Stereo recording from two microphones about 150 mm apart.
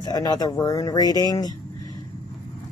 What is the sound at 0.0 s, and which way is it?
Speech, 25° left (ahead or behind).